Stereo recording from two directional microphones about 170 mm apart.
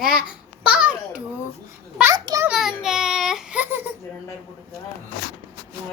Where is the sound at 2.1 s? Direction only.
25° right (ahead or behind).